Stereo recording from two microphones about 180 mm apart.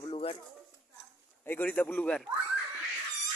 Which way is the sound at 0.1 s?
30° left (ahead or behind).